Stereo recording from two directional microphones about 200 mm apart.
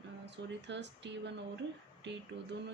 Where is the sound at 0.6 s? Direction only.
60° right (ahead or behind).